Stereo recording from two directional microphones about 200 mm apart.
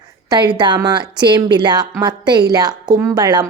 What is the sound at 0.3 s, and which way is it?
A woman's voice, 20° right (ahead or behind).